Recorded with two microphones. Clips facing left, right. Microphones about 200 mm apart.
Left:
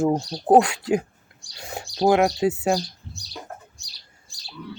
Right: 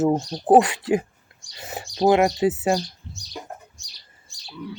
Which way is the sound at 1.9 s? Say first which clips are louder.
Right 1 dB; 5° right (ahead or behind).